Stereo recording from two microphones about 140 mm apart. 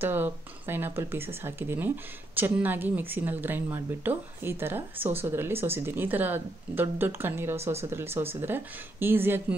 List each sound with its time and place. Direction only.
0.0 s speech: 15° right (ahead or behind)